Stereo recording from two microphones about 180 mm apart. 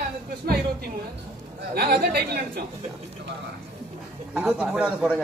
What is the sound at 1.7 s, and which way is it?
Speech, 60° right (ahead or behind).